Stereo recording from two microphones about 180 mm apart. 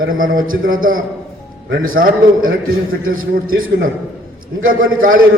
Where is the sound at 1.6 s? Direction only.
75° right (ahead or behind).